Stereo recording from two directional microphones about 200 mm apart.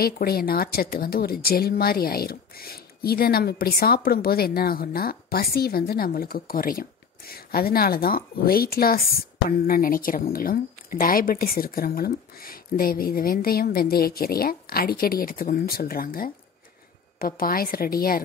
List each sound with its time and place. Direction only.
0.0 s speech: 50° left (ahead or behind)